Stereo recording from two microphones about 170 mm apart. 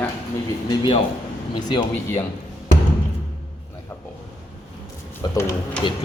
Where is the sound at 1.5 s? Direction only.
25° left (ahead or behind).